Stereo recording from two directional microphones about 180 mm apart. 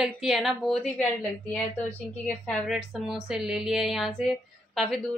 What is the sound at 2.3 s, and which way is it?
A woman's voice, centre (ahead or behind).